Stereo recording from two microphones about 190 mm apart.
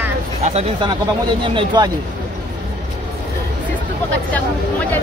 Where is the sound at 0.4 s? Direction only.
35° right (ahead or behind).